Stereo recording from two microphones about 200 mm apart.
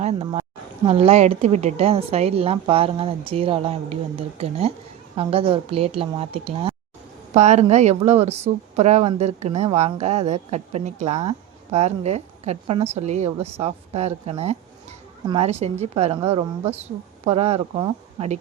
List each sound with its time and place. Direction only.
0.2 s a woman's voice: 20° right (ahead or behind)